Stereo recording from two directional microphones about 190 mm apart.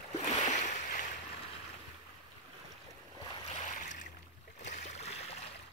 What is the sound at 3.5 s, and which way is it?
Boat, 40° left (ahead or behind).